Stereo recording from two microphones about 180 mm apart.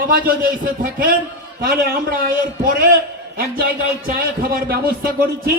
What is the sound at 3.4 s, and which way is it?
A man's voice, 55° right (ahead or behind).